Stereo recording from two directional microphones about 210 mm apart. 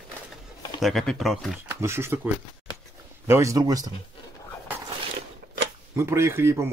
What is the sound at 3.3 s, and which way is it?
Speech, 15° right (ahead or behind).